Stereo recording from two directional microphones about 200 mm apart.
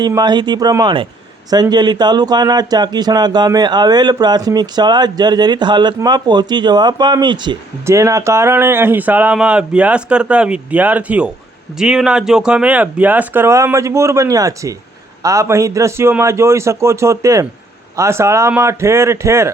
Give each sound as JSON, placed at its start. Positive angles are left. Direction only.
{"t": 0.0, "sound": "speech", "side_deg": -20}